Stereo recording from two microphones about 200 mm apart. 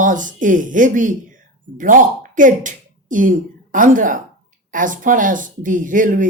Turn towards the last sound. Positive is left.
turn(degrees=-40)  # may be behind; listen again after turning